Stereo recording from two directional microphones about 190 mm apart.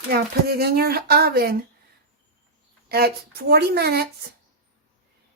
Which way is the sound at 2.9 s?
55° right (ahead or behind).